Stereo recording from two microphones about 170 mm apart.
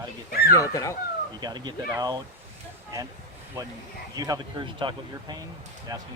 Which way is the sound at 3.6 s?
20° right (ahead or behind).